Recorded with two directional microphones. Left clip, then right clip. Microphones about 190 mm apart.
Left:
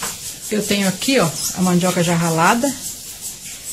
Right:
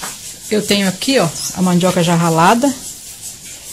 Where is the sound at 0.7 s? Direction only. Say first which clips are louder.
Right 2 dB; 45° right (ahead or behind).